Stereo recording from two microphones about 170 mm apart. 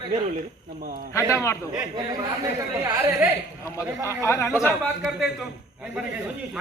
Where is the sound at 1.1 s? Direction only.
15° left (ahead or behind).